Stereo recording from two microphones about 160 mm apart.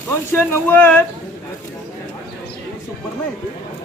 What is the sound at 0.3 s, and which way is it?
Speech, 15° left (ahead or behind).